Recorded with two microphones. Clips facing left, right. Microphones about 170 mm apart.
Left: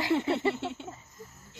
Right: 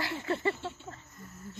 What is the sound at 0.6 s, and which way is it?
Speech, 80° left.